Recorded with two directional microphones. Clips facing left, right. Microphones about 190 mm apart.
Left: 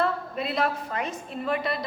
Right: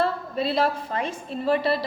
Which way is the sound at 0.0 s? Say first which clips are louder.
Right 2 dB; 30° right (ahead or behind).